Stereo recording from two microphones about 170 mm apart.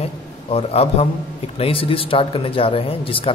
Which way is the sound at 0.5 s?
35° left (ahead or behind).